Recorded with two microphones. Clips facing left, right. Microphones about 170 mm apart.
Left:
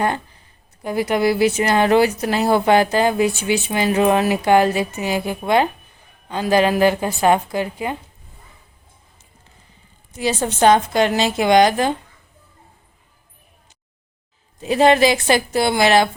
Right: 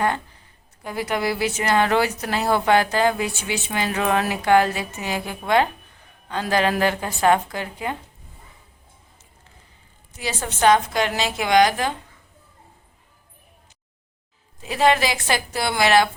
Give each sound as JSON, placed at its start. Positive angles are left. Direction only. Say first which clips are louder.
{"t": 0.9, "sound": "speech", "louder": "left 6 dB", "side_deg": 15}
{"t": 10.2, "sound": "a woman's voice", "louder": "left 6 dB", "side_deg": 25}
{"t": 14.6, "sound": "a woman's voice", "louder": "left 5 dB", "side_deg": 25}